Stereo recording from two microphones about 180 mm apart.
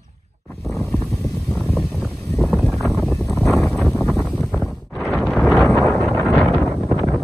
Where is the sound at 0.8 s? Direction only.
5° left (ahead or behind).